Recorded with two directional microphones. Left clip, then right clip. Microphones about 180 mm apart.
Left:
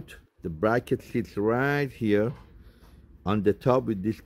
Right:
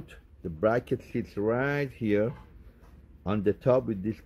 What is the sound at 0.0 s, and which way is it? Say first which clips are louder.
Speech: left 3 dB; 45° left (ahead or behind).